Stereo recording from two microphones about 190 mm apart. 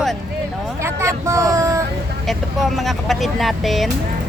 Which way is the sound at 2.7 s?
Centre (ahead or behind).